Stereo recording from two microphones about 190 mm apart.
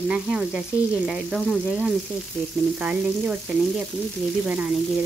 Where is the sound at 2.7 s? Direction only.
5° right (ahead or behind).